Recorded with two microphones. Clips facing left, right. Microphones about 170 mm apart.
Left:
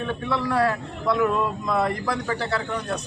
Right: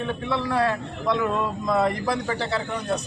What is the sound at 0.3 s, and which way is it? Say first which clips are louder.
A man's voice: left 1 dB; 20° right (ahead or behind).